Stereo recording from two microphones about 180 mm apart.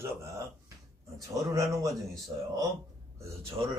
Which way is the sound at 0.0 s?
15° right (ahead or behind).